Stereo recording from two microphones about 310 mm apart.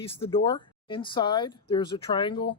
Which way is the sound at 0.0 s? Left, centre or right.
Centre.